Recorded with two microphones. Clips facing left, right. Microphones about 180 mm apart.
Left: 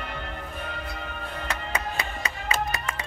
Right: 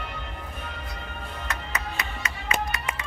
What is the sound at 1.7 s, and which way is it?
Music, 30° left (ahead or behind).